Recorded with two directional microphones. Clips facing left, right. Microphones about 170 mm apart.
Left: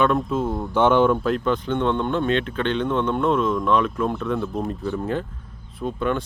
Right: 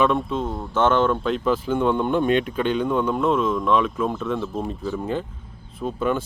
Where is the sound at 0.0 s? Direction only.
Centre (ahead or behind).